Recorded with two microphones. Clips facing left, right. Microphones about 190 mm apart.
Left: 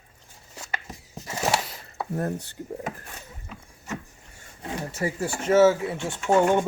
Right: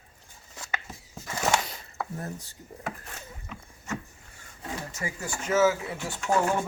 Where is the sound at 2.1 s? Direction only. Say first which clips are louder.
Left 9 dB; 60° left (ahead or behind).